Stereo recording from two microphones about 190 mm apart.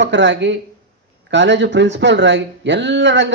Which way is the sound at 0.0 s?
70° right (ahead or behind).